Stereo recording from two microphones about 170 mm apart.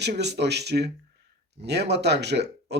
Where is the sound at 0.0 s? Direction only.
80° right.